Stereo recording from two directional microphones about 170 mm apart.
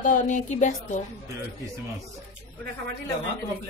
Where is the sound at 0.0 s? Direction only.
50° left (ahead or behind).